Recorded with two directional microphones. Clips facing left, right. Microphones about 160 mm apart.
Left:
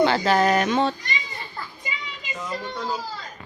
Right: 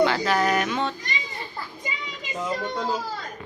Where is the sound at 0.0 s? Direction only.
30° left (ahead or behind).